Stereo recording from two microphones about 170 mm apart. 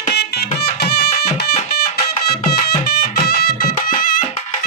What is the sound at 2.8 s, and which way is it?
Music, 65° left (ahead or behind).